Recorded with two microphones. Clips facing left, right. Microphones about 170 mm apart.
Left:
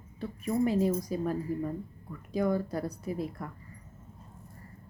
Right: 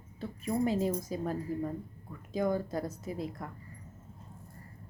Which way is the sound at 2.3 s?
25° right (ahead or behind).